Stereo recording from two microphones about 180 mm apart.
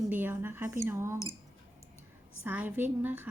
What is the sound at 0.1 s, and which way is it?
A woman's voice, 10° right (ahead or behind).